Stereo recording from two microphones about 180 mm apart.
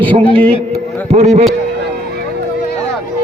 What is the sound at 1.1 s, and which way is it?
Speech, 35° right (ahead or behind).